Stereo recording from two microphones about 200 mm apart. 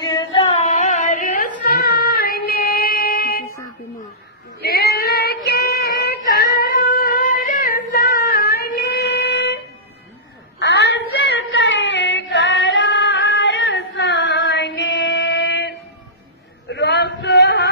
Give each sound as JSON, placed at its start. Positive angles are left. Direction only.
{"t": 0.0, "sound": "carnatic music", "side_deg": 20}
{"t": 0.7, "sound": "a sound", "side_deg": 35}
{"t": 1.9, "sound": "music", "side_deg": 50}
{"t": 4.6, "sound": "child singing", "side_deg": 50}
{"t": 10.6, "sound": "child singing", "side_deg": 60}
{"t": 16.6, "sound": "a sound", "side_deg": 60}